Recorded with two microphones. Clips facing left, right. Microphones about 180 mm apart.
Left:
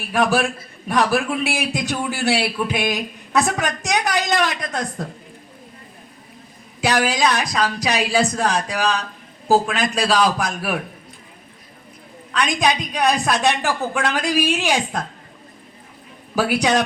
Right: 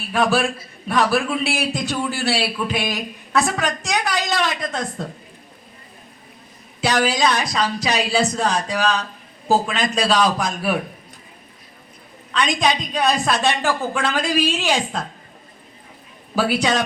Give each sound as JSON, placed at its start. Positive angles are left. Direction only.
{"t": 0.1, "sound": "a woman's voice", "side_deg": 15}
{"t": 6.8, "sound": "a woman's voice", "side_deg": 10}
{"t": 12.3, "sound": "a woman's voice", "side_deg": 10}
{"t": 16.3, "sound": "a woman's voice", "side_deg": 15}